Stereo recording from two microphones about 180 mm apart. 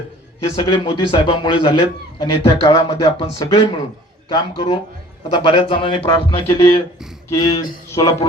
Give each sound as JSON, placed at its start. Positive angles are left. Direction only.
{"t": 0.5, "sound": "a man's voice", "side_deg": 25}